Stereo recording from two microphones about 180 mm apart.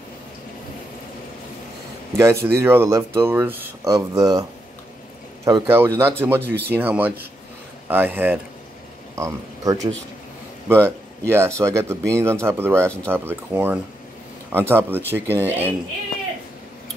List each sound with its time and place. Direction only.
2.1 s speech: 15° right (ahead or behind)
12.8 s speech: 5° left (ahead or behind)
13.1 s speech: 10° right (ahead or behind)